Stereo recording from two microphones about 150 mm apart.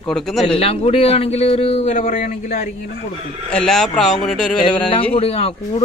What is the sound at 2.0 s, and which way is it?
Speech, 60° left (ahead or behind).